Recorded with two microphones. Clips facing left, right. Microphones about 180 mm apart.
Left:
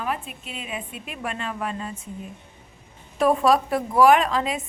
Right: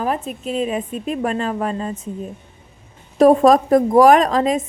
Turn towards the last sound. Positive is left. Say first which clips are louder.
# right 6 dB
turn(degrees=-40)  # may be behind; listen again after turning